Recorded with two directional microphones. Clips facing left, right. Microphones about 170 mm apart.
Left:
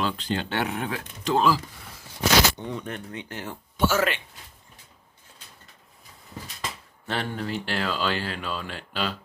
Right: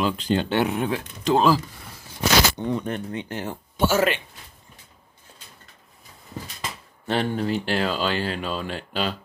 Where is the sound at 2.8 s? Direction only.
30° right (ahead or behind).